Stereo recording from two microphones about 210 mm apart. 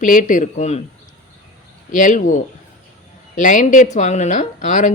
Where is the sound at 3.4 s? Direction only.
40° left (ahead or behind).